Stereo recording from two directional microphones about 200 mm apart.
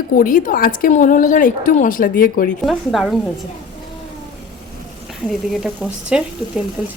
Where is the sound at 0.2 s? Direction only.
45° left (ahead or behind).